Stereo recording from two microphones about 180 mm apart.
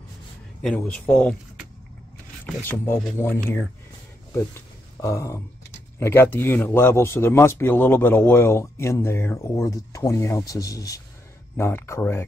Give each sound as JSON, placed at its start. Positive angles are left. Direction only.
{"t": 0.6, "sound": "speech", "side_deg": 5}
{"t": 2.4, "sound": "speech", "side_deg": 10}